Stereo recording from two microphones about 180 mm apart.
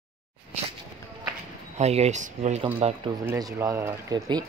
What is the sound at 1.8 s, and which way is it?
Speech, 35° right (ahead or behind).